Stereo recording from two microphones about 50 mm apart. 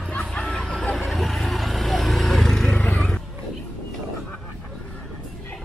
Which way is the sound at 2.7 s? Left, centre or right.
Left.